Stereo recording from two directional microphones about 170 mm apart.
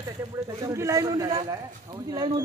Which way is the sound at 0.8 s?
20° right (ahead or behind).